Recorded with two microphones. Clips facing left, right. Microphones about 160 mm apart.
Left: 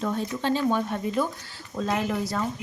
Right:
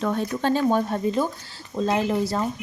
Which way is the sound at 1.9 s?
30° right (ahead or behind).